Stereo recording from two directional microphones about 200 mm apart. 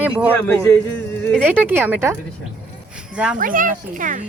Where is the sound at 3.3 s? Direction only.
45° right (ahead or behind).